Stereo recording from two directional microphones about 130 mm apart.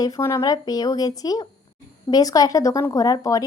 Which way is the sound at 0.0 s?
25° left (ahead or behind).